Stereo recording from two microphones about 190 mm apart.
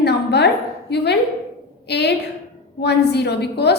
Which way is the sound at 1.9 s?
60° left (ahead or behind).